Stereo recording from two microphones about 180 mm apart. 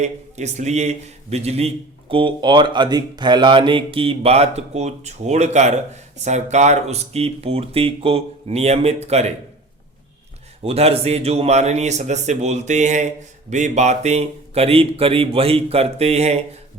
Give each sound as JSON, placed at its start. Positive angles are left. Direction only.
{"t": 0.0, "sound": "a man's voice", "side_deg": -40}
{"t": 10.6, "sound": "a man's voice", "side_deg": -35}